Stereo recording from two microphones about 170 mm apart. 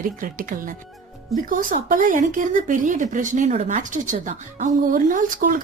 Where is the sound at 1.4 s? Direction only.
55° right (ahead or behind).